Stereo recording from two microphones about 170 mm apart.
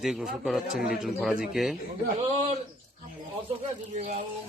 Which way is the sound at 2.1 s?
40° right (ahead or behind).